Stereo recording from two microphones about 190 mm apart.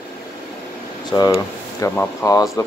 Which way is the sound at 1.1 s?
15° left (ahead or behind).